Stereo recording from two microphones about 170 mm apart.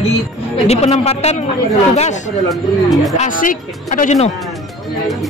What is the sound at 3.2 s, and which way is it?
Speech, 50° left (ahead or behind).